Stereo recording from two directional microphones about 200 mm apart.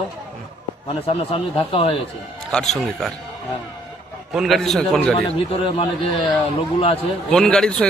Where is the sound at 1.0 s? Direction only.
30° left (ahead or behind).